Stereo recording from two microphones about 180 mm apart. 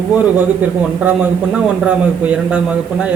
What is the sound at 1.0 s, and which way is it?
A man's voice, 10° right (ahead or behind).